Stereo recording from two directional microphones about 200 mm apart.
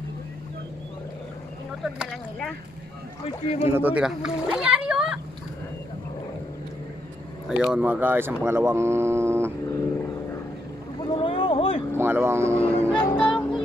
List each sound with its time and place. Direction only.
1.8 s a child's voice: centre (ahead or behind)
3.3 s speech: 30° left (ahead or behind)
3.7 s a child's voice: 5° right (ahead or behind)
7.4 s speech: centre (ahead or behind)
11.1 s a sound: 25° left (ahead or behind)
12.0 s speech: 10° right (ahead or behind)
12.6 s music: 5° left (ahead or behind)